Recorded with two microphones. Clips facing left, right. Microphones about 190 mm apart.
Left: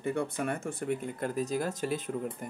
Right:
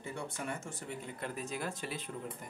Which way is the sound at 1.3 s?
40° left (ahead or behind).